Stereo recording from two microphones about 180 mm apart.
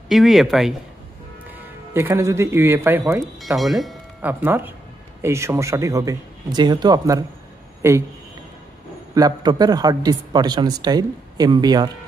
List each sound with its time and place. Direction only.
0.1 s speech: centre (ahead or behind)
1.5 s speech: 15° right (ahead or behind)
3.3 s speech: centre (ahead or behind)
4.3 s a man's voice: 10° right (ahead or behind)
9.1 s a man's voice: 20° right (ahead or behind)